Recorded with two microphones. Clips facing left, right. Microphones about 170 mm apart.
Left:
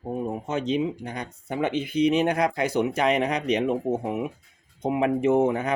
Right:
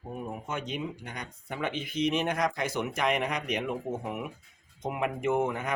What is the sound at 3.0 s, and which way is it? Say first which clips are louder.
Speech: left 3 dB; 35° left (ahead or behind).